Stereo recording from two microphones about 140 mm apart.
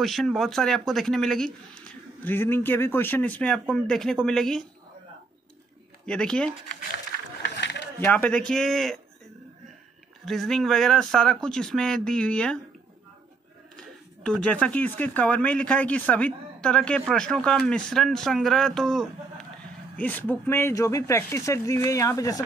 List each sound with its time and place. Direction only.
0.0 s speech: centre (ahead or behind)
6.0 s speech: 5° left (ahead or behind)
8.0 s speech: 10° left (ahead or behind)
10.2 s speech: 5° left (ahead or behind)
13.7 s speech: 5° left (ahead or behind); by 22.4 s 25° left (ahead or behind)